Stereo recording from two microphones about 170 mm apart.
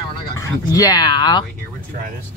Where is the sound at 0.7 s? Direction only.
20° left (ahead or behind).